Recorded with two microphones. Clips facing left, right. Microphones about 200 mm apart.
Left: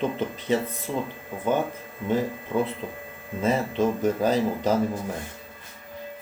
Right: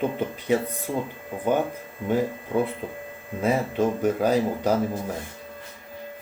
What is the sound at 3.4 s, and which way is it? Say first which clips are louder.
Speech: even; 10° right (ahead or behind).